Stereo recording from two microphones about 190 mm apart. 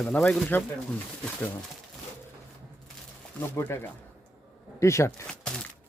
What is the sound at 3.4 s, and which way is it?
Speech, 10° left (ahead or behind).